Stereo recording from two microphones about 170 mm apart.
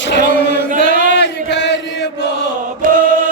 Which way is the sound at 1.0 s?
90° left.